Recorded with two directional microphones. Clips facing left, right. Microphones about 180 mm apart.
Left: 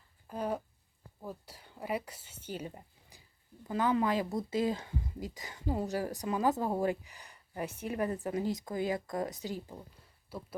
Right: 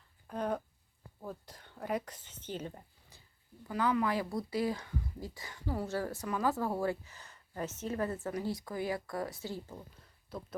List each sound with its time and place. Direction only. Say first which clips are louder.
0.3 s a sound: even; 5° left (ahead or behind)
1.2 s speech: even; 10° left (ahead or behind)
3.7 s speech: left 2 dB; 25° left (ahead or behind); by 10.6 s 5° left (ahead or behind)